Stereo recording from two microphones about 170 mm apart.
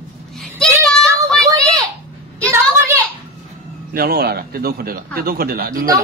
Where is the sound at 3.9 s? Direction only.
65° right (ahead or behind).